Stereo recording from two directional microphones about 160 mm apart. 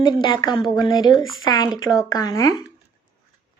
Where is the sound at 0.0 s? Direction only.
30° left (ahead or behind).